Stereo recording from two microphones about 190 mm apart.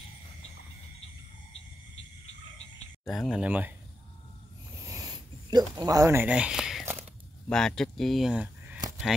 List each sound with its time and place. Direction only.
3.1 s speech: centre (ahead or behind)
4.8 s a sound: 20° right (ahead or behind); by 6.9 s centre (ahead or behind)
7.4 s speech: 5° left (ahead or behind)